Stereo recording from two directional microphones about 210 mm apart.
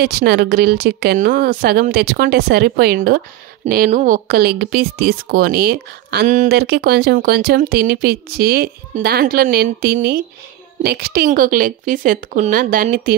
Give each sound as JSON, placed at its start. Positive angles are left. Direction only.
{"t": 0.0, "sound": "speech", "side_deg": -50}